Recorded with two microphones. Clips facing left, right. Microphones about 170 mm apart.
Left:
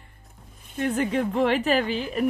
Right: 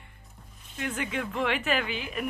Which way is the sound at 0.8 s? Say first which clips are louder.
Left 8 dB; 35° left (ahead or behind).